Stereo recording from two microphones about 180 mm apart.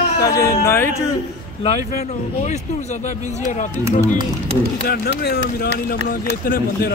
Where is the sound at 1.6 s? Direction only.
35° left (ahead or behind).